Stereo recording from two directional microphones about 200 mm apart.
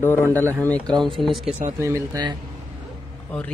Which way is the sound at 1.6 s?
15° right (ahead or behind).